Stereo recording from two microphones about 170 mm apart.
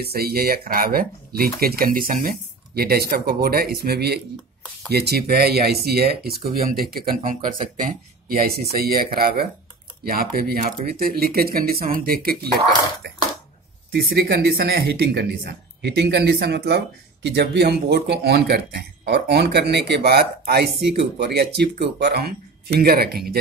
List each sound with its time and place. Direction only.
0.0 s speech: 65° right (ahead or behind)
13.0 s a sound: 75° right (ahead or behind)
13.9 s speech: 65° right (ahead or behind)